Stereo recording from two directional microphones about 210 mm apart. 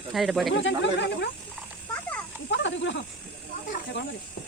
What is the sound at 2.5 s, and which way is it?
Snake, 60° left (ahead or behind).